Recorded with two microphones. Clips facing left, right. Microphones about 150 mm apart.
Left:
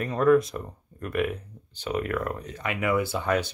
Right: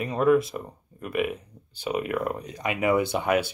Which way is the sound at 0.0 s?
10° right (ahead or behind).